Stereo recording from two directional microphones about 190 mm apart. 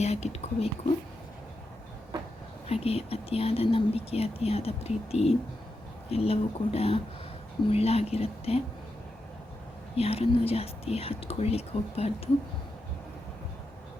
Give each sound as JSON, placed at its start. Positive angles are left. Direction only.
{"t": 0.0, "sound": "speech", "side_deg": 35}
{"t": 2.8, "sound": "speech", "side_deg": 30}
{"t": 9.9, "sound": "speech", "side_deg": 30}